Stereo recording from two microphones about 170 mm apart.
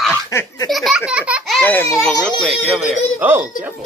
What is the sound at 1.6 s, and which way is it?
A child's voice, 10° left (ahead or behind).